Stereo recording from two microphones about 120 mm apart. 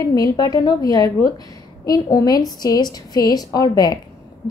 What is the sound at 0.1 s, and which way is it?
A woman's voice, 30° left (ahead or behind).